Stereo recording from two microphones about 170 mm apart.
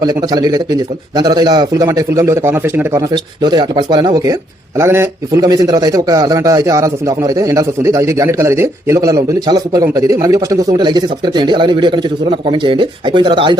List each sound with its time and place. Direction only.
0.0 s a man's voice: 25° right (ahead or behind)
3.1 s a man's voice: 25° right (ahead or behind)